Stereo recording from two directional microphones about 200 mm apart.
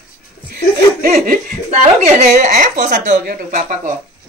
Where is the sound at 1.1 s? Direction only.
40° right (ahead or behind).